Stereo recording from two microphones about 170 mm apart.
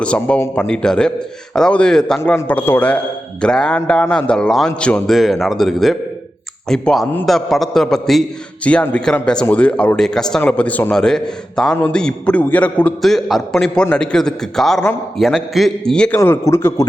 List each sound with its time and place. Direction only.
0.0 s speech: 5° left (ahead or behind)
16.1 s speech: 15° left (ahead or behind)